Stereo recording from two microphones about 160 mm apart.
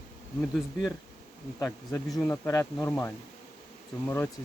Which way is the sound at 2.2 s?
15° left (ahead or behind).